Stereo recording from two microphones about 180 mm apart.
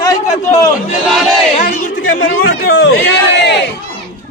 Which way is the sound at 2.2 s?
70° left (ahead or behind).